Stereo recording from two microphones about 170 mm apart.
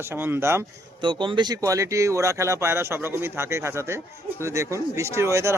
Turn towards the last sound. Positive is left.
turn(degrees=-15)  # may be behind; listen again after turning